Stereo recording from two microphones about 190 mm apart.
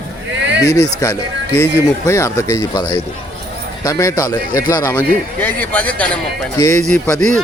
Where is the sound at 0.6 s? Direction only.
15° left (ahead or behind).